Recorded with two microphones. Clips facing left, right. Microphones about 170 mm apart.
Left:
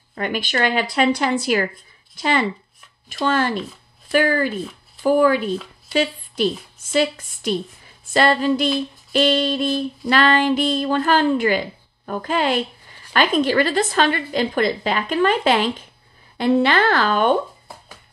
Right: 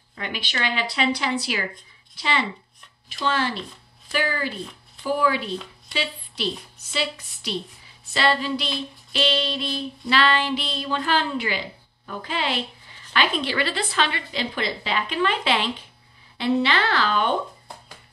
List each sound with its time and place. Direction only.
0.1 s a woman's voice: 50° left (ahead or behind)